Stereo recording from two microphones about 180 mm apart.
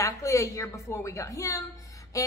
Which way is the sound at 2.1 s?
20° left (ahead or behind).